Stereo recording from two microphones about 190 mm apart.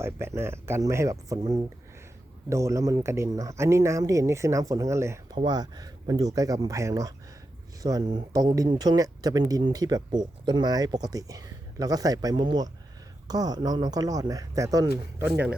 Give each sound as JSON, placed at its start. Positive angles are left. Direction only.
{"t": 0.0, "sound": "speech", "side_deg": -15}